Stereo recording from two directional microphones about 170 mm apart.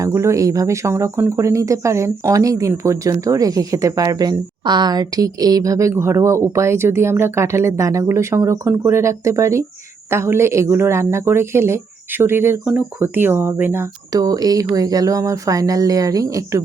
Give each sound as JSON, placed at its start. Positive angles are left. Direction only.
{"t": 0.0, "sound": "speech", "side_deg": -15}